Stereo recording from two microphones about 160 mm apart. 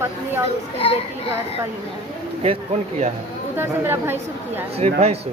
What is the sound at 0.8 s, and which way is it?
Speech, 35° left (ahead or behind).